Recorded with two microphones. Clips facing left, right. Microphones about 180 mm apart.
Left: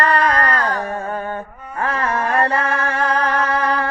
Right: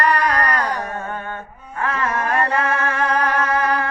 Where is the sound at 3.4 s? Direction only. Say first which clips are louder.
Even; 35° left (ahead or behind).